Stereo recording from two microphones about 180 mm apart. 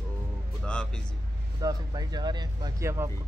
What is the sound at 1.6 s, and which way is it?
Speech, 20° right (ahead or behind).